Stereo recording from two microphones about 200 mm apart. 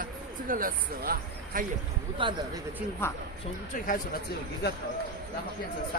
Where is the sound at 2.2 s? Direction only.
25° right (ahead or behind).